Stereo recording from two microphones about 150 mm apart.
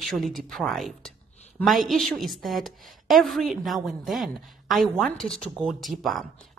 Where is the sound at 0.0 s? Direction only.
Centre (ahead or behind).